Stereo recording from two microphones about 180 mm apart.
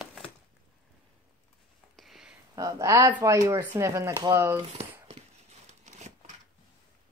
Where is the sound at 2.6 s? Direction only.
20° right (ahead or behind).